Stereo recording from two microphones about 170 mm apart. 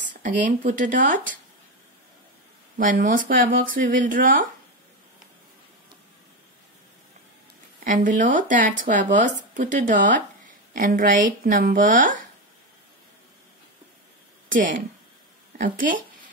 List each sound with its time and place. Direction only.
0.2 s speech: 50° right (ahead or behind)
2.8 s speech: 55° right (ahead or behind)
7.8 s speech: 50° right (ahead or behind)
14.5 s speech: 50° right (ahead or behind)